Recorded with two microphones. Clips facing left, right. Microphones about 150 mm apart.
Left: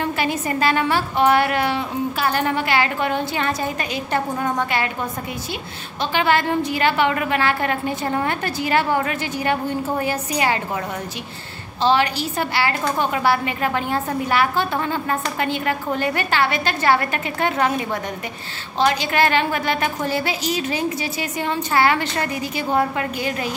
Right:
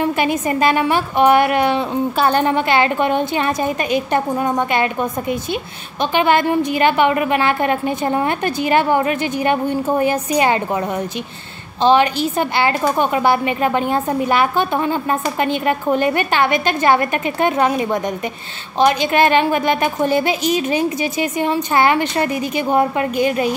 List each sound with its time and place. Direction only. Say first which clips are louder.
0.0 s a woman's voice: right 5 dB; 20° right (ahead or behind)
6.1 s a woman's voice: right 4 dB; 20° right (ahead or behind)
11.8 s a woman's voice: right 5 dB; 20° right (ahead or behind)